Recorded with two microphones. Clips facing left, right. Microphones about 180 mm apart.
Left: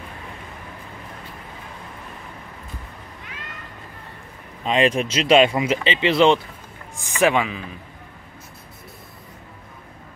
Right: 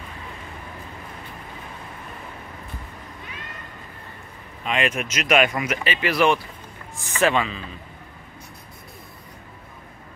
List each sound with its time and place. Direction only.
4.6 s a man's voice: 30° left (ahead or behind); by 7.7 s 15° left (ahead or behind)